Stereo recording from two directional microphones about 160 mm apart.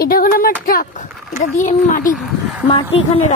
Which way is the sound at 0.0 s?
65° left (ahead or behind).